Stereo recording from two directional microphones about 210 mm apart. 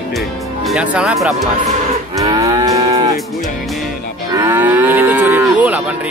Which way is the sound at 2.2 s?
15° right (ahead or behind).